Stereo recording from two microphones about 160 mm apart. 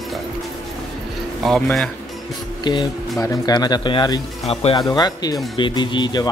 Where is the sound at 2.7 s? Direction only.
25° left (ahead or behind).